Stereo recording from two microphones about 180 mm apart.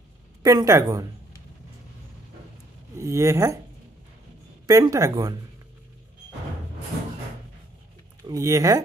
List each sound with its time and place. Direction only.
0.4 s speech: 20° right (ahead or behind)
3.0 s speech: 15° right (ahead or behind)
4.6 s speech: 20° right (ahead or behind)
8.3 s speech: 20° right (ahead or behind)